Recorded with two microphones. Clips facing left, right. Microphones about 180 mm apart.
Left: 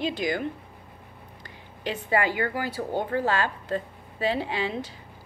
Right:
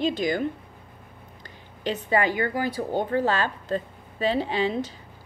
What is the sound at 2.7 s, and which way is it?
A woman's voice, 20° right (ahead or behind).